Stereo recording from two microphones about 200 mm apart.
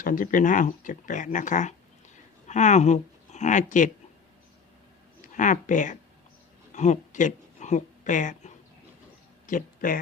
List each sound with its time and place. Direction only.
0.0 s speech: 45° left (ahead or behind)
5.4 s speech: 40° left (ahead or behind)